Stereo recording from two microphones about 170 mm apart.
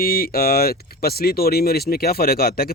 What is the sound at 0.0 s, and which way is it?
Speech, 60° left (ahead or behind).